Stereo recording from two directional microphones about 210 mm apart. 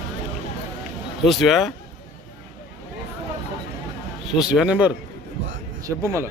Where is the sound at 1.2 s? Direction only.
Centre (ahead or behind).